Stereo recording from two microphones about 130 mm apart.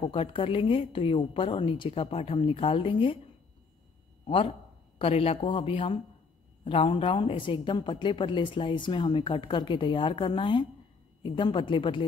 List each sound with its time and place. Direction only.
0.0 s a woman's voice: 40° left (ahead or behind)
4.9 s a woman's voice: 45° left (ahead or behind)